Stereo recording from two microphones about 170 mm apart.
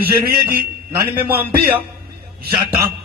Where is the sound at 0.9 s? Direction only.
15° right (ahead or behind).